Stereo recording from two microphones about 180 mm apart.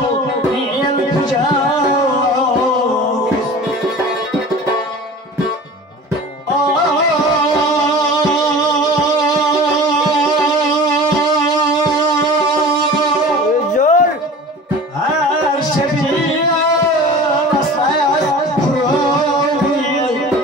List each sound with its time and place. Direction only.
13.7 s music: 45° left (ahead or behind)